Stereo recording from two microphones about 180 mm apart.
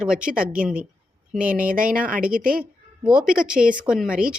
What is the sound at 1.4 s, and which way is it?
Speech, 10° right (ahead or behind).